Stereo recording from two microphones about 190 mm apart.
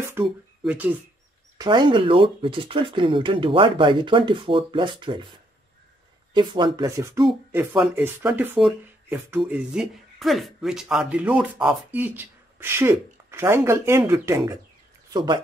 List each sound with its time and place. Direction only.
0.2 s speech: 15° right (ahead or behind)
1.6 s speech: 25° right (ahead or behind)
6.3 s speech: 25° right (ahead or behind)